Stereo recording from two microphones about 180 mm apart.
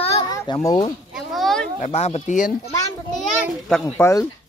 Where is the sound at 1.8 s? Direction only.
35° left (ahead or behind).